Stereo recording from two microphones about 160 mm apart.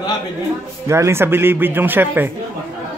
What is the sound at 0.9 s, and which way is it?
Speech, 15° right (ahead or behind).